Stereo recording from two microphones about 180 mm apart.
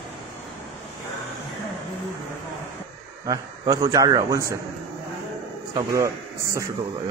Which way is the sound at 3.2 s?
20° right (ahead or behind).